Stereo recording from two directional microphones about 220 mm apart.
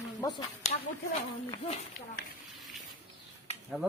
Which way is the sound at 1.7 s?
30° left (ahead or behind).